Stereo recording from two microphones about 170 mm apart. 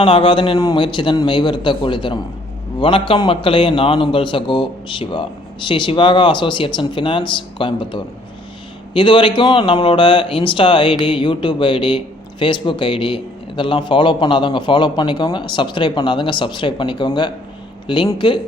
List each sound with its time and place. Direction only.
0.0 s a man's voice: 30° left (ahead or behind)